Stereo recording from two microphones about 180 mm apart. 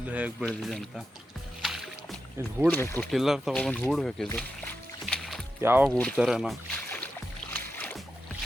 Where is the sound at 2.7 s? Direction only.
10° left (ahead or behind).